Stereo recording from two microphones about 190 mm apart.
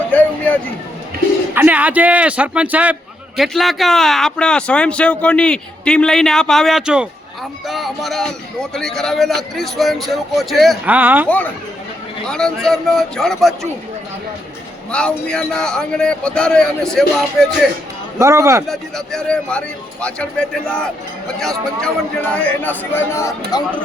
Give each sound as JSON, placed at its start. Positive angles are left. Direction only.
{"t": 0.1, "sound": "a sound", "side_deg": 10}
{"t": 1.5, "sound": "a man's voice", "side_deg": -10}
{"t": 12.2, "sound": "a man's voice", "side_deg": 5}
{"t": 14.9, "sound": "a man's voice", "side_deg": 5}
{"t": 18.2, "sound": "a man's voice", "side_deg": -15}
{"t": 18.7, "sound": "a man's voice", "side_deg": 0}